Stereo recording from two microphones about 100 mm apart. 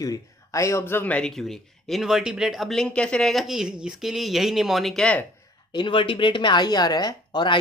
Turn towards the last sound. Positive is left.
turn(degrees=45)  # may be behind; listen again after turning